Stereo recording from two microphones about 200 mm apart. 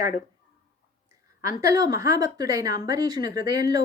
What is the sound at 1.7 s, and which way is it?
A woman's voice, 15° right (ahead or behind).